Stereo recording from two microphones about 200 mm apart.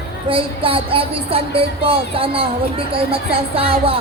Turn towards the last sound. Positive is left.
turn(degrees=-30)  # may be behind; listen again after turning